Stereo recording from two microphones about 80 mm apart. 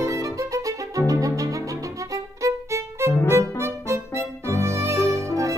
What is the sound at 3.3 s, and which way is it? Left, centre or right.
Music, right.